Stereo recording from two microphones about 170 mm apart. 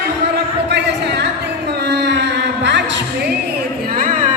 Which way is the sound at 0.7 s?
85° right.